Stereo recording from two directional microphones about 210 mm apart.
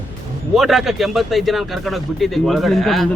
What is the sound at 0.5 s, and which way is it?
Speech, centre (ahead or behind).